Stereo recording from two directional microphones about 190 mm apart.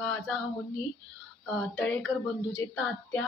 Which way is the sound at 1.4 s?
5° left (ahead or behind).